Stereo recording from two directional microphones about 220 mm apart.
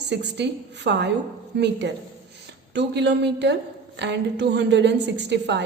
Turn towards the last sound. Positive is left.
turn(degrees=-50)  # may be behind; listen again after turning